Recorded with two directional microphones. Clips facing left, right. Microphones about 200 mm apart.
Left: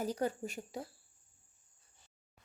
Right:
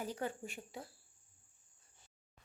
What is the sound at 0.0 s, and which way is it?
Speech, 40° left (ahead or behind).